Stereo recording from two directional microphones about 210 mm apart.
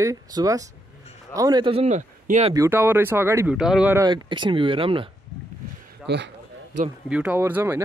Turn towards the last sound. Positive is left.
turn(degrees=-10)  # may be behind; listen again after turning